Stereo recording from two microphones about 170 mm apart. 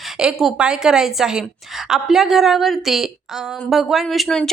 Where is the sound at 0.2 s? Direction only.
Centre (ahead or behind).